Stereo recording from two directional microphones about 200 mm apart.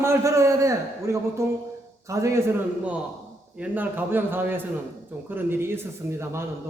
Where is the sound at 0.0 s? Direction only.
15° right (ahead or behind).